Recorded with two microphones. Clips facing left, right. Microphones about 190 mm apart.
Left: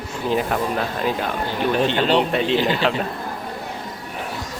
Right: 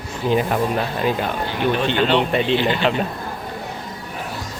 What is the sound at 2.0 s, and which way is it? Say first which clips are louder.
Speech: right 1 dB; 40° left (ahead or behind).